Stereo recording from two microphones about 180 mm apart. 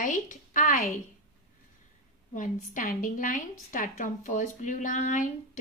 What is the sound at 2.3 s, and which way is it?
A woman's voice, 45° left (ahead or behind).